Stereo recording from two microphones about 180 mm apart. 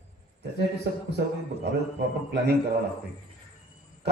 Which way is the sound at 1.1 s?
65° right (ahead or behind).